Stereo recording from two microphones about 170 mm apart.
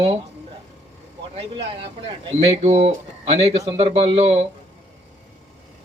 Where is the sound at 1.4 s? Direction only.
35° right (ahead or behind).